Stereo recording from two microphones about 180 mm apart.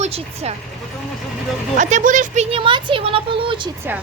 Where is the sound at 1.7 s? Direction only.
45° right (ahead or behind); by 3.2 s 30° right (ahead or behind).